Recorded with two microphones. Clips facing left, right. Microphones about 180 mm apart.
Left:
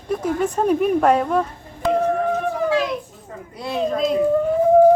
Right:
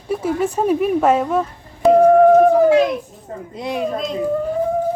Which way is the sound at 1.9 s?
40° right (ahead or behind).